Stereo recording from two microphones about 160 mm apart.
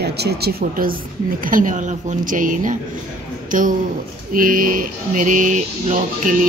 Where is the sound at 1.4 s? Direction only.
55° right (ahead or behind).